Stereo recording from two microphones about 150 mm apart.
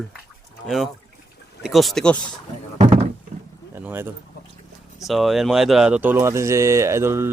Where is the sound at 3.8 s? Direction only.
15° right (ahead or behind).